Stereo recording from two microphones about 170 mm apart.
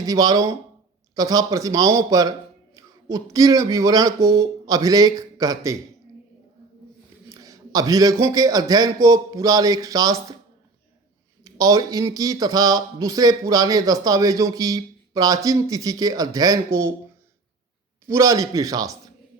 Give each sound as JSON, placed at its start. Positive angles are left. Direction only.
{"t": 0.0, "sound": "speech", "side_deg": -20}
{"t": 7.3, "sound": "speech", "side_deg": -20}
{"t": 11.4, "sound": "speech", "side_deg": -20}
{"t": 18.0, "sound": "speech", "side_deg": -15}